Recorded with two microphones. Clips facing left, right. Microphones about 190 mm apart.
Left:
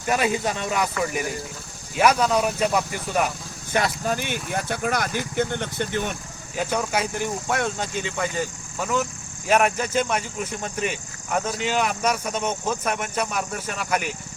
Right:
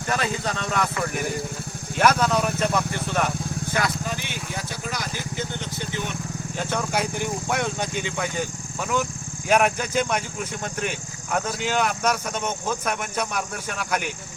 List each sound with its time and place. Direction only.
0.1 s speech: 15° left (ahead or behind)
3.7 s speech: 25° left (ahead or behind)
4.0 s speech: 50° left (ahead or behind)
6.6 s speech: 5° left (ahead or behind)